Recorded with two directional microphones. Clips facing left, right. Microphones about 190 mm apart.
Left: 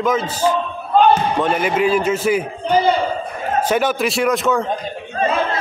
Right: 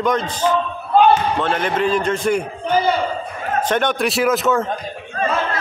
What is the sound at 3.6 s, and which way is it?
A man's voice, 5° left (ahead or behind).